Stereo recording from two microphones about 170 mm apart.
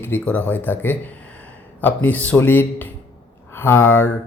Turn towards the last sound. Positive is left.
turn(degrees=10)  # may be behind; listen again after turning